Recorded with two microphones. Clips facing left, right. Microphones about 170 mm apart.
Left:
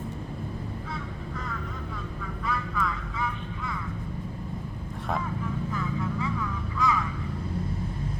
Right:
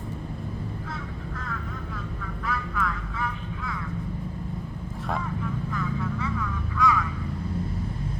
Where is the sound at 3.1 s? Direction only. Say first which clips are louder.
Even; centre (ahead or behind).